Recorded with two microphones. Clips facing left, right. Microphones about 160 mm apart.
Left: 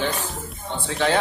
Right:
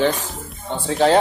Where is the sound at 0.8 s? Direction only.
35° right (ahead or behind).